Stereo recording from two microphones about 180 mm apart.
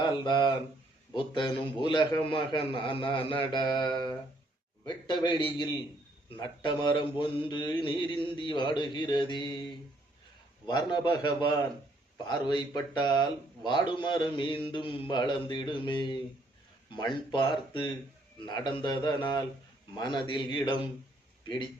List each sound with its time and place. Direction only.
0.0 s speech: 25° left (ahead or behind)
1.1 s mantra: 25° left (ahead or behind)
10.7 s mantra: 25° left (ahead or behind)